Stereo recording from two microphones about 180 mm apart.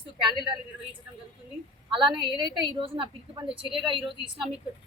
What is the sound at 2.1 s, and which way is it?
A woman's voice, 25° right (ahead or behind).